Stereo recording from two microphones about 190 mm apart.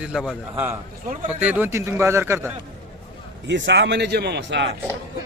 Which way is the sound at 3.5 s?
75° right (ahead or behind).